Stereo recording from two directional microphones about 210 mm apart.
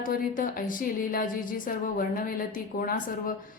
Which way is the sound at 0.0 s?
40° left (ahead or behind).